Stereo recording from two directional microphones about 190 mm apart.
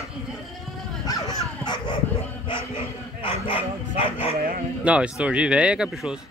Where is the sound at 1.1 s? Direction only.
20° left (ahead or behind).